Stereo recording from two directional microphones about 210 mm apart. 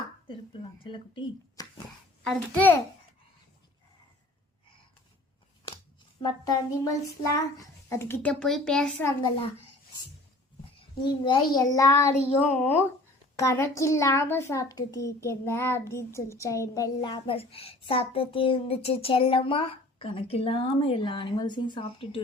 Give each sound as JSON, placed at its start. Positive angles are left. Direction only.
{"t": 0.9, "sound": "a child's voice", "side_deg": 25}
{"t": 2.2, "sound": "a child's voice", "side_deg": 5}
{"t": 6.2, "sound": "a child's voice", "side_deg": 20}
{"t": 11.3, "sound": "a child's voice", "side_deg": 20}